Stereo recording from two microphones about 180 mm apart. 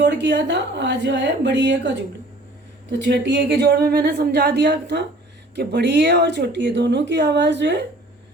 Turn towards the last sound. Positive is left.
turn(degrees=-75)  # may be behind; listen again after turning